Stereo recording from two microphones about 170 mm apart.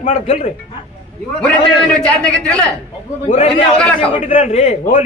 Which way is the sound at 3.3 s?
35° left (ahead or behind).